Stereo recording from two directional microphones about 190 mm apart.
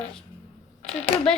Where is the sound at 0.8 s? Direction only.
35° left (ahead or behind).